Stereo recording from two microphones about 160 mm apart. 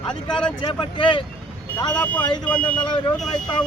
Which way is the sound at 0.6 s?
30° left (ahead or behind).